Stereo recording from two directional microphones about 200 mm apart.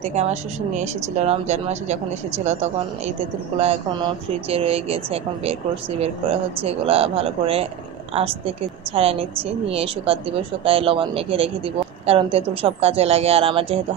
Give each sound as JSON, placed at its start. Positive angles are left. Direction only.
{"t": 0.1, "sound": "speech", "side_deg": -35}
{"t": 4.5, "sound": "a woman's voice", "side_deg": -30}